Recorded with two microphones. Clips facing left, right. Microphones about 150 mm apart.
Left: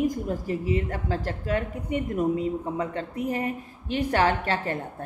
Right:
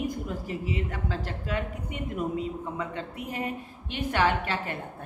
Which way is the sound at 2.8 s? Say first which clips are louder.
Left 5 dB; 40° left (ahead or behind).